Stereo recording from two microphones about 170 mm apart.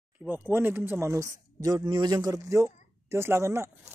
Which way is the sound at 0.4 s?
10° right (ahead or behind).